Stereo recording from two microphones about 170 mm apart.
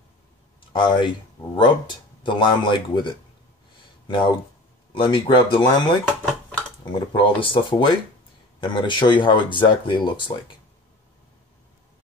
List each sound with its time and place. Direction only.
0.7 s speech: 25° left (ahead or behind)